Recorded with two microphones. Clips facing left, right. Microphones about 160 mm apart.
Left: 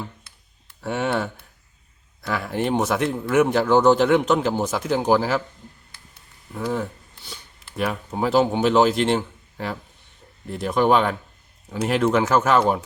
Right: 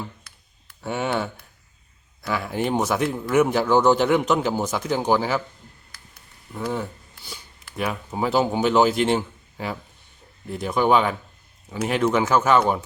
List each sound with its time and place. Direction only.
0.3 s computer keyboard: 25° left (ahead or behind)
0.8 s speech: centre (ahead or behind)
6.5 s speech: centre (ahead or behind)